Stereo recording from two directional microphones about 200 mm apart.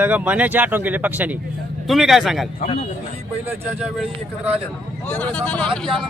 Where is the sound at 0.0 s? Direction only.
5° right (ahead or behind).